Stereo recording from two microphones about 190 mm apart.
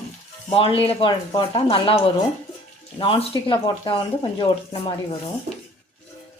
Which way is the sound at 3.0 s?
25° left (ahead or behind).